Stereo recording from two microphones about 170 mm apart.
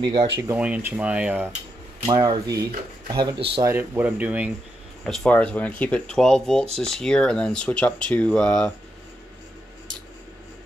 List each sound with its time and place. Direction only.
0.0 s speech: 30° right (ahead or behind)
0.6 s speech: 10° right (ahead or behind)
2.0 s speech: 25° right (ahead or behind)
3.6 s speech: 15° right (ahead or behind)
5.0 s speech: 5° left (ahead or behind)